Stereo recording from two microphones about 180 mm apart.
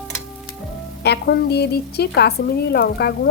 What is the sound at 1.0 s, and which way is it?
Speech, 65° left (ahead or behind).